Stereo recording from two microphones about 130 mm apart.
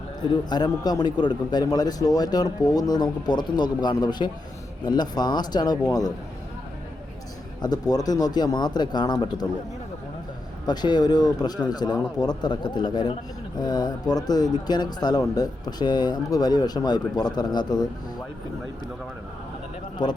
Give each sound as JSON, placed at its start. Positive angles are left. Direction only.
{"t": 0.2, "sound": "speech", "side_deg": 35}
{"t": 7.6, "sound": "speech", "side_deg": 30}
{"t": 10.7, "sound": "speech", "side_deg": 35}
{"t": 20.0, "sound": "speech", "side_deg": 35}